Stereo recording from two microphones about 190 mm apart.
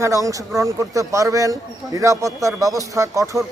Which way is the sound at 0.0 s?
15° right (ahead or behind).